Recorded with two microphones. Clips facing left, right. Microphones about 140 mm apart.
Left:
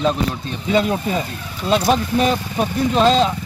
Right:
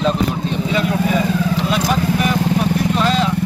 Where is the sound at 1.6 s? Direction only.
25° left (ahead or behind).